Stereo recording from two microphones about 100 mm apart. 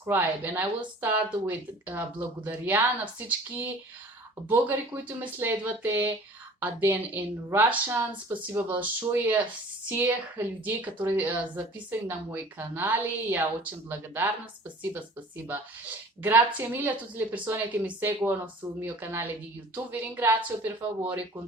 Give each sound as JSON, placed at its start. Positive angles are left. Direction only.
{"t": 0.0, "sound": "speech", "side_deg": -20}
{"t": 16.2, "sound": "speech", "side_deg": -20}